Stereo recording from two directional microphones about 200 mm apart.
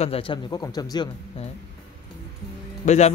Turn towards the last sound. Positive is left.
turn(degrees=35)  # may be behind; listen again after turning